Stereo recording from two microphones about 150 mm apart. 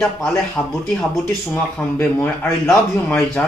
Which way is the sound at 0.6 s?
20° left (ahead or behind).